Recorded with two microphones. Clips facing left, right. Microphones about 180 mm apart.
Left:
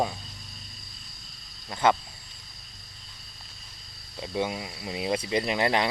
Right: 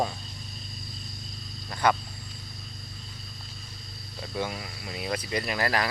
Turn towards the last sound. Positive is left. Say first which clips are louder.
# left 3 dB
turn(degrees=20)  # may be behind; listen again after turning